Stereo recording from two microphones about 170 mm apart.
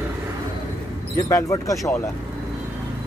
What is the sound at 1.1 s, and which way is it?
Speech, 20° left (ahead or behind).